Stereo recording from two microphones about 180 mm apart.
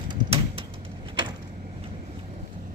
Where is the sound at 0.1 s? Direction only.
30° right (ahead or behind).